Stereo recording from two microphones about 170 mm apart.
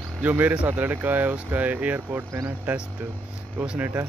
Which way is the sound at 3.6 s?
15° right (ahead or behind).